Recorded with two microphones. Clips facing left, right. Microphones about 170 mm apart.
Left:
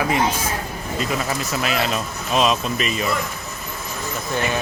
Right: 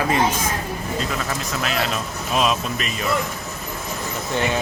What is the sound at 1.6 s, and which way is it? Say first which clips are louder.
Speech: left 1 dB; 5° left (ahead or behind).